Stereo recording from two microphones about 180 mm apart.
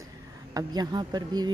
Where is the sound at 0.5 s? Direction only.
20° right (ahead or behind).